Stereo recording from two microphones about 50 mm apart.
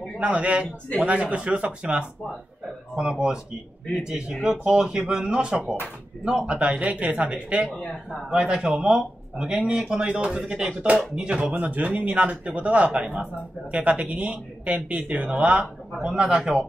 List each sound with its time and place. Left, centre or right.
0.2 s speech: right
3.0 s speech: centre
11.5 s speech: right